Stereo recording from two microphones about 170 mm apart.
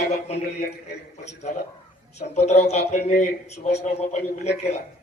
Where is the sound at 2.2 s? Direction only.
40° left (ahead or behind).